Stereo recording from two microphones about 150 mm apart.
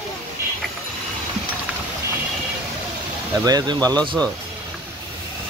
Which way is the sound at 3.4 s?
25° right (ahead or behind).